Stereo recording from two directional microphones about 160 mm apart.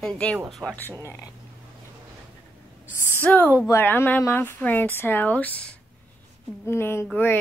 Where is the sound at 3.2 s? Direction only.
10° left (ahead or behind).